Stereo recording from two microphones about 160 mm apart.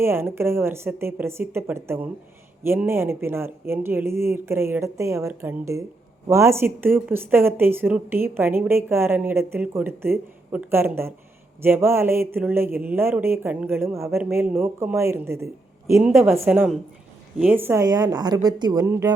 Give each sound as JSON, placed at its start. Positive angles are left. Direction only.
{"t": 0.0, "sound": "a woman's voice", "side_deg": -15}